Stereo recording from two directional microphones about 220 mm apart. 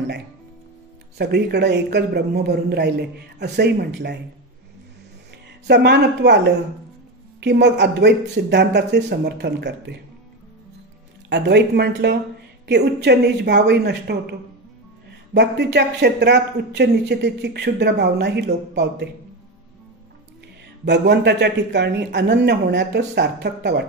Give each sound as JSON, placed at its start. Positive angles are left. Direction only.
{"t": 1.1, "sound": "a man's voice", "side_deg": -50}
{"t": 5.7, "sound": "a man's voice", "side_deg": -50}
{"t": 11.2, "sound": "a man's voice", "side_deg": -50}
{"t": 20.8, "sound": "a man's voice", "side_deg": -50}